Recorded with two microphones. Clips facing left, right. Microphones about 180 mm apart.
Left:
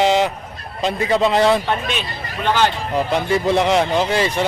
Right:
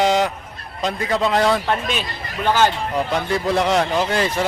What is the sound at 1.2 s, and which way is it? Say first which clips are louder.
Speech: left 2 dB; 20° left (ahead or behind).